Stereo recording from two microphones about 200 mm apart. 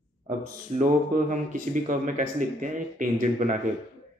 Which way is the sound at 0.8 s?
40° right (ahead or behind).